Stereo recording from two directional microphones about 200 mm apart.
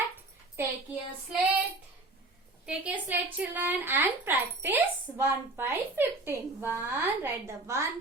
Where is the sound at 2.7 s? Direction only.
5° right (ahead or behind).